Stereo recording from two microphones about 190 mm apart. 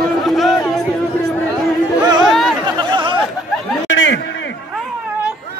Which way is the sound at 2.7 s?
25° right (ahead or behind).